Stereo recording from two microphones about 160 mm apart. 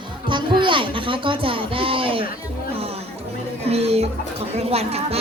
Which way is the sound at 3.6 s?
40° right (ahead or behind).